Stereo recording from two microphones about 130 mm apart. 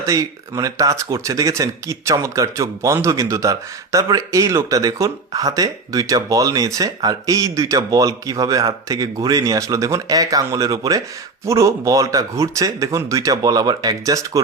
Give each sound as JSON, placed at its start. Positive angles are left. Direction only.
{"t": 0.0, "sound": "speech", "side_deg": -25}